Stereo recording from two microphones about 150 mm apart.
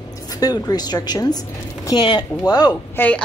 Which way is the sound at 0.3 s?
25° left (ahead or behind).